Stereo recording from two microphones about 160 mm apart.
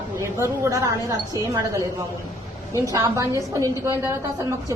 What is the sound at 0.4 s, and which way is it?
A woman's voice, 15° right (ahead or behind).